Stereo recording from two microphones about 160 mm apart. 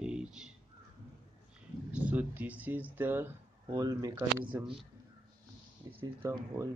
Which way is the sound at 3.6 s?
25° right (ahead or behind).